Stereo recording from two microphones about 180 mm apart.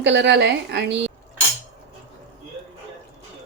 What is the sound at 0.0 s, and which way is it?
A woman's voice, 75° right (ahead or behind).